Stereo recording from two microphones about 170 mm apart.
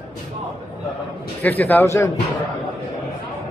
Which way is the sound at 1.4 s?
10° left (ahead or behind).